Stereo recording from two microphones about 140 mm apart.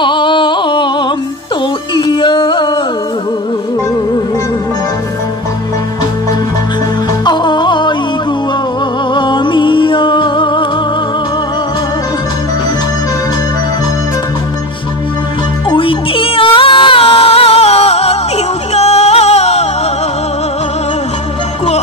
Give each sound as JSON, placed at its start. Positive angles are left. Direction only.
{"t": 0.0, "sound": "a sound", "side_deg": 35}
{"t": 2.0, "sound": "music", "side_deg": 35}
{"t": 7.2, "sound": "music", "side_deg": 30}
{"t": 9.1, "sound": "music", "side_deg": 35}
{"t": 15.7, "sound": "music", "side_deg": 40}